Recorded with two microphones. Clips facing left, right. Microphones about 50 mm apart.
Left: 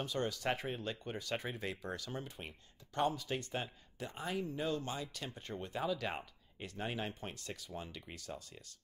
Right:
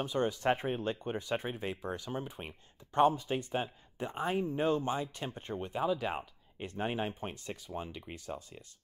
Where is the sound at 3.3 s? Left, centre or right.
Centre.